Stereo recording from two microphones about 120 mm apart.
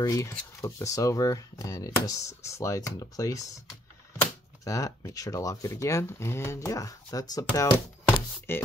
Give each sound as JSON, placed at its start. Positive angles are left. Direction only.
{"t": 0.0, "sound": "speech", "side_deg": 25}
{"t": 8.1, "sound": "chopping", "side_deg": 20}